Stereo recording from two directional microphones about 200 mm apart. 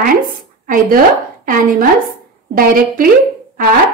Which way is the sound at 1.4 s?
45° right (ahead or behind).